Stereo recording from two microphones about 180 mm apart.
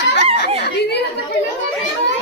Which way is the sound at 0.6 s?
65° left (ahead or behind).